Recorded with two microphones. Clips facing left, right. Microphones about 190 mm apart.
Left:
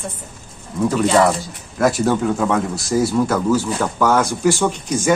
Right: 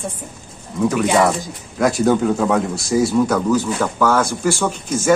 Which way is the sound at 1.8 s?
Centre (ahead or behind).